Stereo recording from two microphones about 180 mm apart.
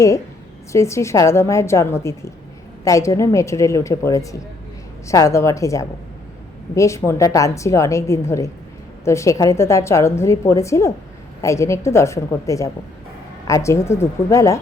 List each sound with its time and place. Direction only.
0.7 s a woman's voice: 15° left (ahead or behind)